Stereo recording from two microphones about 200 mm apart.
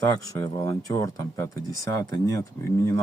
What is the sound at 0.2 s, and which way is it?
Speech, 15° left (ahead or behind).